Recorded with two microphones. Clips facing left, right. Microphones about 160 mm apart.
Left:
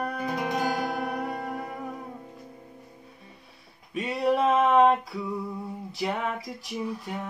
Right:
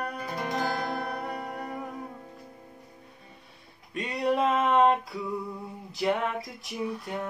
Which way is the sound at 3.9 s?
Centre (ahead or behind).